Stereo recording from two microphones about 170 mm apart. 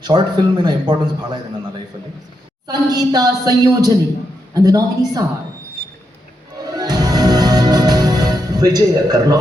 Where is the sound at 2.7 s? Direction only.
20° right (ahead or behind).